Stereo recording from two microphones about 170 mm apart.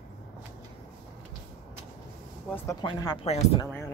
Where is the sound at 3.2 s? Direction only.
40° left (ahead or behind).